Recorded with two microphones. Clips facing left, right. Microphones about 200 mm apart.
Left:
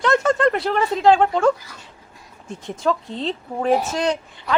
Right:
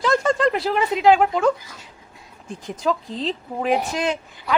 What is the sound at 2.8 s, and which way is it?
Speech, centre (ahead or behind).